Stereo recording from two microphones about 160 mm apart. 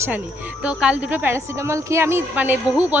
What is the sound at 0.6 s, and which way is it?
A woman's voice, 5° right (ahead or behind).